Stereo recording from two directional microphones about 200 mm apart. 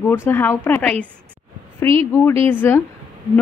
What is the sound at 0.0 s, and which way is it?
Speech, 10° left (ahead or behind).